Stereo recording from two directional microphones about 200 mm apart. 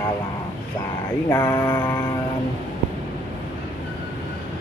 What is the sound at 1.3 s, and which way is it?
Mantra, 20° left (ahead or behind).